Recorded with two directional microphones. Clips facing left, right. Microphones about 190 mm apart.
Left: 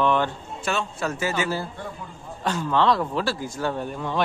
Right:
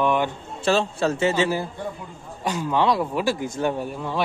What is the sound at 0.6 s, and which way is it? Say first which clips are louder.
Speech: right 6 dB; 30° right (ahead or behind).